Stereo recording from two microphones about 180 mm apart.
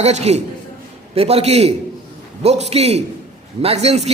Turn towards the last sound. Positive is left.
turn(degrees=-35)  # may be behind; listen again after turning